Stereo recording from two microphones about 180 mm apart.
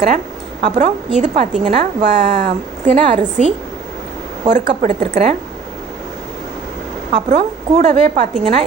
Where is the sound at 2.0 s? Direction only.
60° right (ahead or behind).